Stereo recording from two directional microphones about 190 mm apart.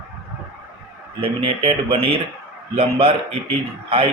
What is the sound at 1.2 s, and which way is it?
A man's voice, 30° right (ahead or behind).